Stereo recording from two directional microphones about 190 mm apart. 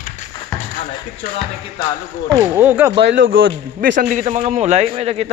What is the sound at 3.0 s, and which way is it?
Speech, 75° right (ahead or behind).